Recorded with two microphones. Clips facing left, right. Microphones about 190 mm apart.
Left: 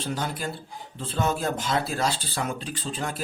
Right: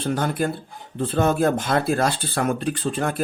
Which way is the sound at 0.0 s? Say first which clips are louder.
Right 7 dB; 55° right (ahead or behind).